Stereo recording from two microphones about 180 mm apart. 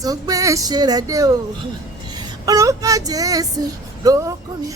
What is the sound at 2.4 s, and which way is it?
A woman's voice, 20° right (ahead or behind).